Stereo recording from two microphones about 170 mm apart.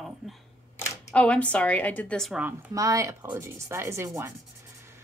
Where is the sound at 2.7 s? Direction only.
20° right (ahead or behind).